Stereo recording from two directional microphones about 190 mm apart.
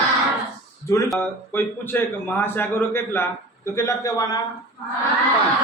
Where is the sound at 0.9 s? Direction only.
15° left (ahead or behind).